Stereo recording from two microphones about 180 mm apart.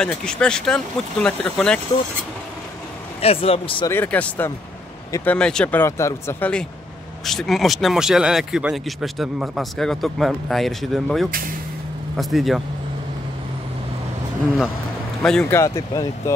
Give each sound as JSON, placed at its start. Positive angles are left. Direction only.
{"t": 0.0, "sound": "speech", "side_deg": 5}
{"t": 3.2, "sound": "speech", "side_deg": 35}
{"t": 3.9, "sound": "speech", "side_deg": 10}
{"t": 7.2, "sound": "speech", "side_deg": 0}
{"t": 15.5, "sound": "speech", "side_deg": 15}